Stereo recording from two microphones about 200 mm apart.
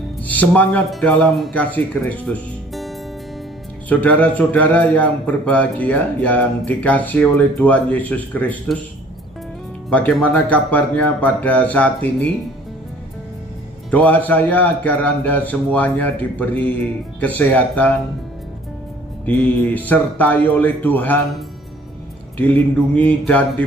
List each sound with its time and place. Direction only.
0.3 s a man's voice: 10° left (ahead or behind)
3.9 s a man's voice: 10° left (ahead or behind)
9.8 s a man's voice: 5° left (ahead or behind)
13.8 s a man's voice: 5° left (ahead or behind)
19.2 s a man's voice: 5° left (ahead or behind)
22.4 s a man's voice: 10° left (ahead or behind)